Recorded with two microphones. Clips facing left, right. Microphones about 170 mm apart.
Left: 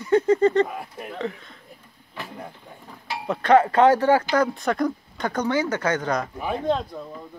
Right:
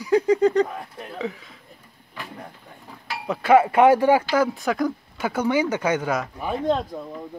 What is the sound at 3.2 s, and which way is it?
Speech, 5° right (ahead or behind).